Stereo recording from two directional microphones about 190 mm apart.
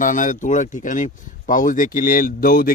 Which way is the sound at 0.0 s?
45° left (ahead or behind).